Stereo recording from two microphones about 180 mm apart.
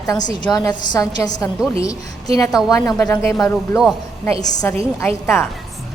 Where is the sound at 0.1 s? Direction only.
20° left (ahead or behind).